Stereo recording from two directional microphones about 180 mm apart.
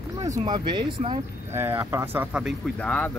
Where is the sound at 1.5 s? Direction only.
15° right (ahead or behind); by 3.1 s 5° left (ahead or behind).